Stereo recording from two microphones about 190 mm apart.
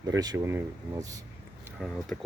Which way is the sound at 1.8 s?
Centre (ahead or behind).